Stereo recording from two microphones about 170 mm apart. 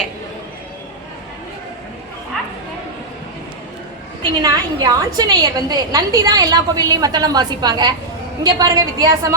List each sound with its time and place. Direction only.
4.2 s a woman's voice: 25° right (ahead or behind)